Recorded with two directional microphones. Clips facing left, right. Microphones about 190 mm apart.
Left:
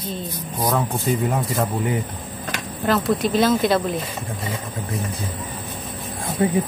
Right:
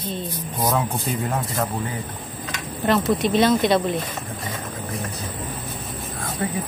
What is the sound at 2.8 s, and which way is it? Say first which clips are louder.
Speech: even; centre (ahead or behind).